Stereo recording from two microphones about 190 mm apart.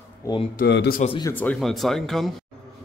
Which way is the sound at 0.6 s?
55° left (ahead or behind).